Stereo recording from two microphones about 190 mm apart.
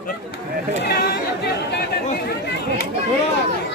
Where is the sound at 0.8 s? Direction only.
55° left (ahead or behind).